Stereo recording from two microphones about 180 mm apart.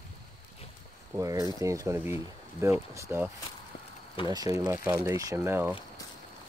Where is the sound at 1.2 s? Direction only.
20° right (ahead or behind).